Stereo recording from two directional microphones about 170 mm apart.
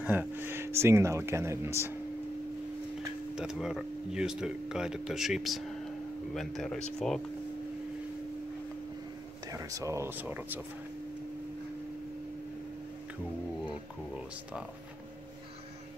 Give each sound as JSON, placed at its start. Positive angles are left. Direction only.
{"t": 0.0, "sound": "speech", "side_deg": -10}
{"t": 3.3, "sound": "speech", "side_deg": -5}
{"t": 9.5, "sound": "speech", "side_deg": -20}